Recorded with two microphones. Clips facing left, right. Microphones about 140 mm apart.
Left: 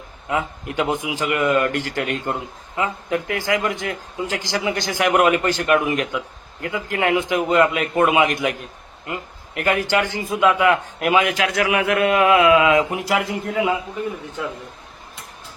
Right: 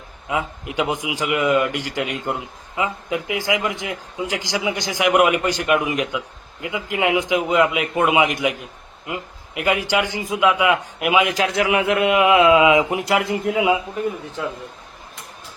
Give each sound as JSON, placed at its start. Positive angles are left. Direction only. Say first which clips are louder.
{"t": 0.3, "sound": "a man's voice", "louder": "left 1 dB", "side_deg": -10}
{"t": 9.6, "sound": "a man's voice", "louder": "even", "side_deg": -10}
{"t": 11.3, "sound": "a man's voice", "louder": "right 1 dB", "side_deg": -30}
{"t": 13.0, "sound": "a man's voice", "louder": "right 2 dB", "side_deg": 0}